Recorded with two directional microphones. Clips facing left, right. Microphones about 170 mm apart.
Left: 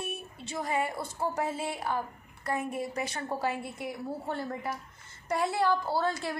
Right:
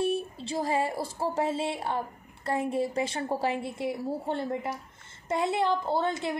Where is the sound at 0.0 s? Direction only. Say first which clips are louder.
Right 10 dB; 30° right (ahead or behind).